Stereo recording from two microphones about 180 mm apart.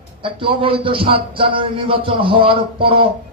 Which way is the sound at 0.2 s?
30° right (ahead or behind).